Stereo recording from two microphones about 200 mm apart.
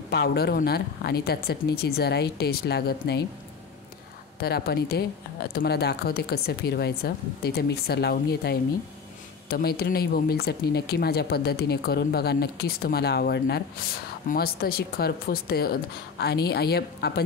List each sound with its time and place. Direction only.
0.1 s speech: 55° left (ahead or behind)
4.4 s speech: 50° left (ahead or behind)